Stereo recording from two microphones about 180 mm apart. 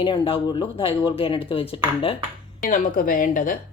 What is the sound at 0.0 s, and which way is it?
Speech, 25° left (ahead or behind).